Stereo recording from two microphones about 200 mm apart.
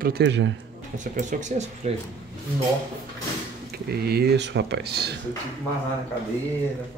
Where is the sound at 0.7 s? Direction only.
40° right (ahead or behind).